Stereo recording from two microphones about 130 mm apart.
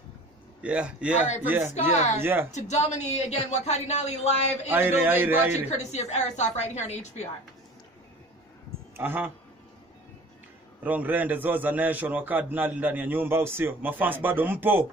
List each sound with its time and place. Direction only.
0.6 s a man's voice: 10° right (ahead or behind)
1.7 s speech: 60° left (ahead or behind)
2.1 s a man's voice: 15° right (ahead or behind)
2.5 s speech: 60° left (ahead or behind)
4.6 s a man's voice: 15° right (ahead or behind)
5.7 s speech: 60° left (ahead or behind)
8.9 s a man's voice: 15° right (ahead or behind)
10.8 s a man's voice: 15° right (ahead or behind)